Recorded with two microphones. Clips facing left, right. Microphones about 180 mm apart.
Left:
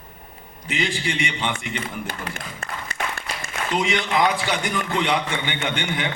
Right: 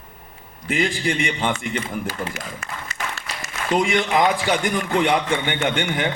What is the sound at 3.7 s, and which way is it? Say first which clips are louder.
A man's voice: right 3 dB; 50° right (ahead or behind).